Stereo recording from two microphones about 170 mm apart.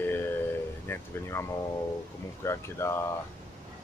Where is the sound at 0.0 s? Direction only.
10° left (ahead or behind).